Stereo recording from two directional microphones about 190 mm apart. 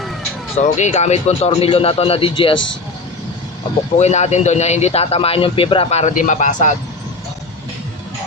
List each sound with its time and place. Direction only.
0.6 s speech: 40° left (ahead or behind)
3.9 s speech: 35° left (ahead or behind)